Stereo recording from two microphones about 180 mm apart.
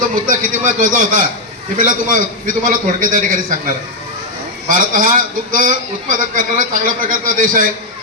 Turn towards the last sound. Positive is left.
turn(degrees=-50)  # may be behind; listen again after turning